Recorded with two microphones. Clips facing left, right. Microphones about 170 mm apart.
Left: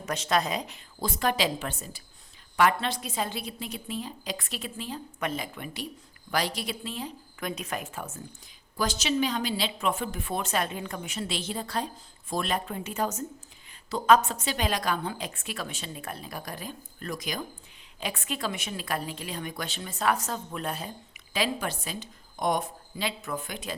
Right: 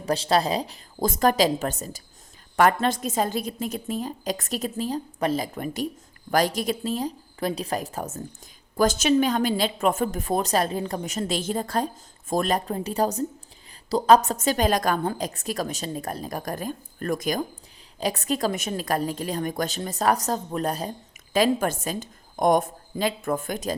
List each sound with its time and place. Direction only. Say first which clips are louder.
0.0 s a woman's voice: right 5 dB; 30° right (ahead or behind)